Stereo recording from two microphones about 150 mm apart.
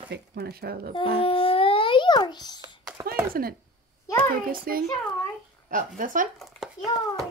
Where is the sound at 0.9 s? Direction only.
40° left (ahead or behind).